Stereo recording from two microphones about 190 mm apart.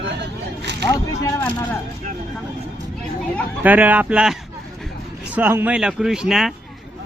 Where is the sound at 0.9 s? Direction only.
15° left (ahead or behind).